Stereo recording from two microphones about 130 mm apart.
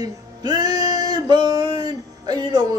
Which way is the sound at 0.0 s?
30° right (ahead or behind).